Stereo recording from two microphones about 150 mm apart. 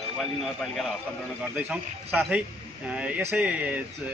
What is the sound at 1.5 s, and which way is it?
A man's voice, 10° right (ahead or behind).